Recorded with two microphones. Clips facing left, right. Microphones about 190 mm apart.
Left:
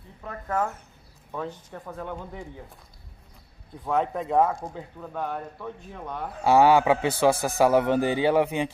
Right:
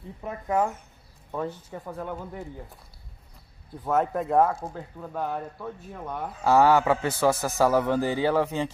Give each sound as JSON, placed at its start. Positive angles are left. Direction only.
{"t": 0.2, "sound": "speech", "side_deg": -15}
{"t": 3.8, "sound": "speech", "side_deg": -5}
{"t": 6.4, "sound": "a man's voice", "side_deg": 20}